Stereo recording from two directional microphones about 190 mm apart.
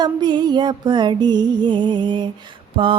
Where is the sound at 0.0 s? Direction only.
20° right (ahead or behind).